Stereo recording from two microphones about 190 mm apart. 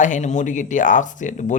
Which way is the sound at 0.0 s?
40° left (ahead or behind).